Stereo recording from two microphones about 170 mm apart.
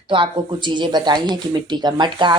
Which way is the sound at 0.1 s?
30° right (ahead or behind).